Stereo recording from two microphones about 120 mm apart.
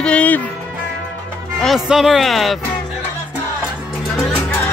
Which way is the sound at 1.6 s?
Centre (ahead or behind).